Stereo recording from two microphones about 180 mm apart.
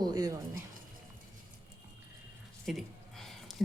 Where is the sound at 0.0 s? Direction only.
20° right (ahead or behind).